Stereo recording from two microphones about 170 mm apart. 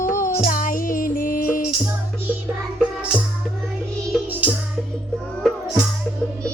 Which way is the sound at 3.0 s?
5° right (ahead or behind).